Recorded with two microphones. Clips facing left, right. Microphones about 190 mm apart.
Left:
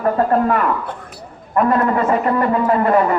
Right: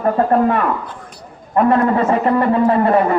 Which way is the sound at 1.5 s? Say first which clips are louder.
Right 2 dB; 30° right (ahead or behind).